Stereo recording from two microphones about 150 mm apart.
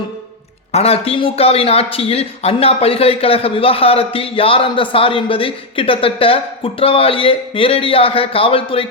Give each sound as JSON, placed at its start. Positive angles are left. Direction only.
{"t": 0.7, "sound": "speech", "side_deg": 40}